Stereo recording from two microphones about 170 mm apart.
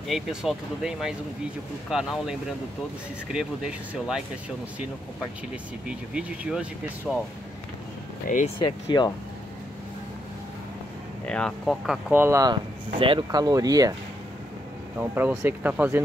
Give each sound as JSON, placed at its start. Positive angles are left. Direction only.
{"t": 0.1, "sound": "speech", "side_deg": 0}
{"t": 3.3, "sound": "speech", "side_deg": -5}
{"t": 5.9, "sound": "speech", "side_deg": -5}
{"t": 8.5, "sound": "speech", "side_deg": 30}
{"t": 11.2, "sound": "speech", "side_deg": 5}
{"t": 15.0, "sound": "speech", "side_deg": -10}